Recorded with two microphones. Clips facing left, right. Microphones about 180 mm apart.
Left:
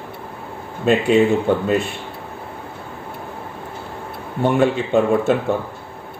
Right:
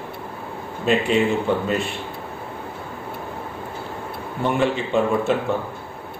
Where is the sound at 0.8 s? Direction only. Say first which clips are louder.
Left 4 dB; 45° left (ahead or behind).